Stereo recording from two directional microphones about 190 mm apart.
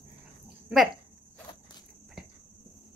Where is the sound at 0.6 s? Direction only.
Centre (ahead or behind).